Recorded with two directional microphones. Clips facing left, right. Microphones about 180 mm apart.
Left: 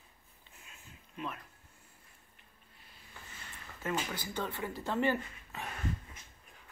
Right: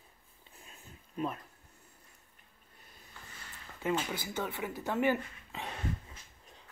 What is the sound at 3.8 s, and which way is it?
Speech, 10° right (ahead or behind).